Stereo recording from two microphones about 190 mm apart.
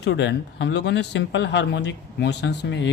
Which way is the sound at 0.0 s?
65° left (ahead or behind).